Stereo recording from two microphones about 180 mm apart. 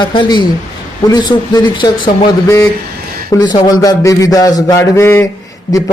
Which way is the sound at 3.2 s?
20° left (ahead or behind).